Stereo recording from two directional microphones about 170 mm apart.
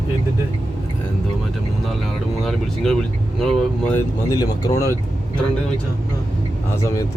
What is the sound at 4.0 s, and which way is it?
Speech, 20° left (ahead or behind).